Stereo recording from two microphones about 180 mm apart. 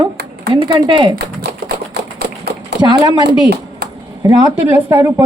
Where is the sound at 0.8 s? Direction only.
25° right (ahead or behind).